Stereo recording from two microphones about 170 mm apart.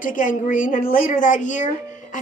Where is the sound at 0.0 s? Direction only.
50° left (ahead or behind).